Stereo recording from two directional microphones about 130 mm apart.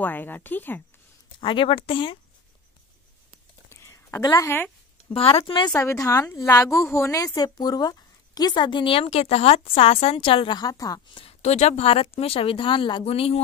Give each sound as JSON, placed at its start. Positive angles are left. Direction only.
{"t": 0.0, "sound": "speech", "side_deg": 15}
{"t": 1.4, "sound": "a woman's voice", "side_deg": 40}
{"t": 3.6, "sound": "a sound", "side_deg": 20}
{"t": 5.1, "sound": "speech", "side_deg": 50}
{"t": 5.4, "sound": "a woman's voice", "side_deg": 35}
{"t": 5.8, "sound": "a woman's voice", "side_deg": 25}
{"t": 11.1, "sound": "speech", "side_deg": 55}